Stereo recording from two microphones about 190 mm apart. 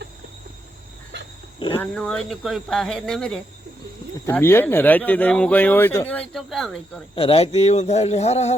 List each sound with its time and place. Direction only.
1.5 s speech: 25° left (ahead or behind)
1.8 s speech: 5° left (ahead or behind)
7.2 s a man's voice: 30° left (ahead or behind)